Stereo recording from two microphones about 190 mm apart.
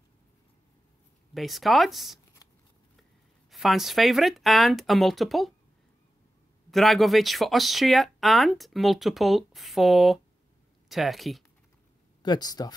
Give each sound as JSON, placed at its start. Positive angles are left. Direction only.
{"t": 1.3, "sound": "speech", "side_deg": 0}
{"t": 2.4, "sound": "shuffling cards", "side_deg": 15}
{"t": 3.4, "sound": "speech", "side_deg": 0}
{"t": 6.7, "sound": "speech", "side_deg": 0}
{"t": 12.2, "sound": "speech", "side_deg": 20}